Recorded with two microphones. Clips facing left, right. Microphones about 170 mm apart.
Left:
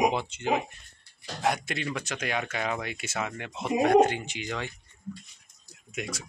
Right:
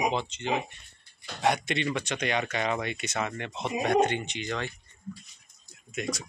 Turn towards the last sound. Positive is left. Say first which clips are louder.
# right 3 dB
turn(degrees=10)  # may be behind; listen again after turning